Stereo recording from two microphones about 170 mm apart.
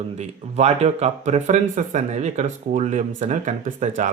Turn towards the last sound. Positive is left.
turn(degrees=-45)  # may be behind; listen again after turning